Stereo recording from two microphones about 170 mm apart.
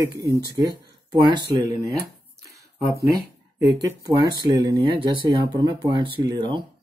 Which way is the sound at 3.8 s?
20° right (ahead or behind).